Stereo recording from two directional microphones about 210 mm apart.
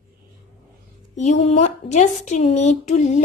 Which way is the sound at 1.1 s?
35° left (ahead or behind).